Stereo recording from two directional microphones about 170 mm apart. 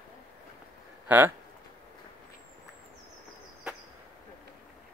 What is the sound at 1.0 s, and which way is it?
Speech, 10° right (ahead or behind).